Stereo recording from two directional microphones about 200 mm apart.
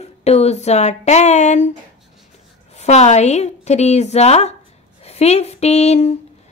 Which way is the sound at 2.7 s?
35° left (ahead or behind).